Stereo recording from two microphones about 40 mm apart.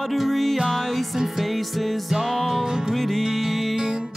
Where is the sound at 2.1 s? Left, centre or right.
Centre.